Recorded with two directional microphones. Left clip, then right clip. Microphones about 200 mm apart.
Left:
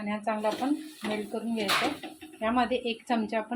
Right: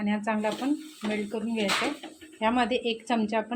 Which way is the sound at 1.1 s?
15° right (ahead or behind).